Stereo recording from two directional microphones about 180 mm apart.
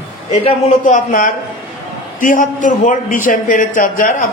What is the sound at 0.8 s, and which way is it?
A man's voice, 45° left (ahead or behind).